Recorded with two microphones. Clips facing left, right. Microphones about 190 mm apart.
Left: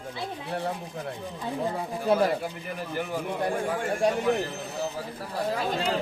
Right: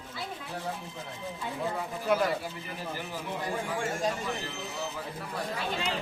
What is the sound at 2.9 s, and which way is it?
Speech, 55° left (ahead or behind).